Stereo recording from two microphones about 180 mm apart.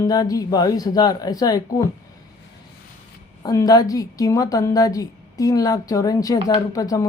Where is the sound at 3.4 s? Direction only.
20° left (ahead or behind).